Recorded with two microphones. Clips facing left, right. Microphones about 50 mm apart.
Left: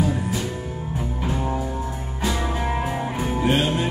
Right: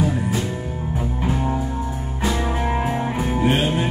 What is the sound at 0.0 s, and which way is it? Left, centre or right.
Music, centre.